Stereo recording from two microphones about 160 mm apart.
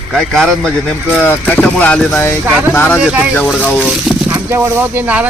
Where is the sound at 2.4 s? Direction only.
10° right (ahead or behind).